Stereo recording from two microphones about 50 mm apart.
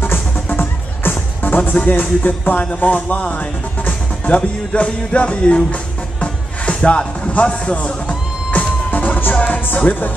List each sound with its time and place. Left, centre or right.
0.5 s music: left